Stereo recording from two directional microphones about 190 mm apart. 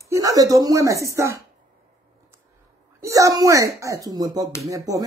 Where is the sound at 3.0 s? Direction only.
15° right (ahead or behind).